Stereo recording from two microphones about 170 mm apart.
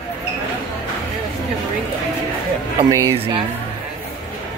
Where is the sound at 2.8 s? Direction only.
20° right (ahead or behind).